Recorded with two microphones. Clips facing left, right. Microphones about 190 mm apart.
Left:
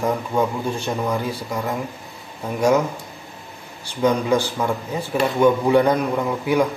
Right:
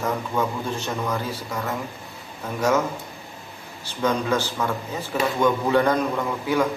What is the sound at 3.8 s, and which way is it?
Speech, 15° left (ahead or behind).